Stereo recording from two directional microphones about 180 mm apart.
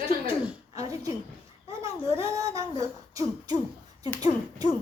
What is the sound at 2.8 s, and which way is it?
Speech, 20° right (ahead or behind).